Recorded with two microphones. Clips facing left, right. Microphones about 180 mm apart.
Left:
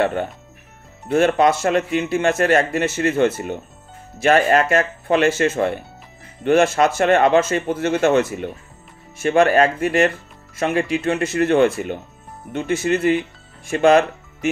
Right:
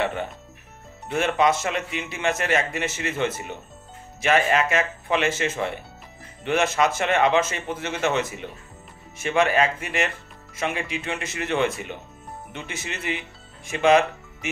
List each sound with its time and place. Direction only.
0.0 s speech: 50° left (ahead or behind)
9.2 s speech: 45° left (ahead or behind)
10.6 s speech: 55° left (ahead or behind)